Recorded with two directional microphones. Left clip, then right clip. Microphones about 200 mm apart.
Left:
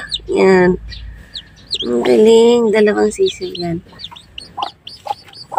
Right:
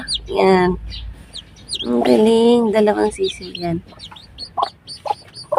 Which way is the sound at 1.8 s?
Centre (ahead or behind).